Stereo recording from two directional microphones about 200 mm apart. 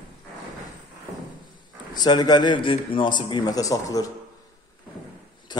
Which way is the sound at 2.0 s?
20° left (ahead or behind).